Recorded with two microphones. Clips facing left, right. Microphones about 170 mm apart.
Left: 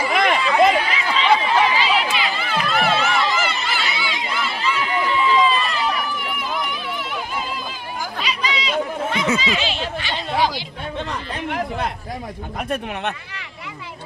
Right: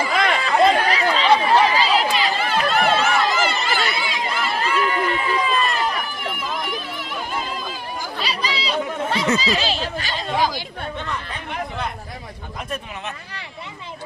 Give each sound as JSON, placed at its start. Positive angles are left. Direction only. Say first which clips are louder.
{"t": 0.4, "sound": "chatter", "louder": "right 2 dB", "side_deg": -40}
{"t": 1.0, "sound": "run", "louder": "right 1 dB", "side_deg": -40}
{"t": 8.2, "sound": "chatter", "louder": "left 1 dB", "side_deg": -35}
{"t": 9.4, "sound": "a sound", "louder": "right 1 dB", "side_deg": -35}
{"t": 12.5, "sound": "speech", "louder": "left 5 dB", "side_deg": 60}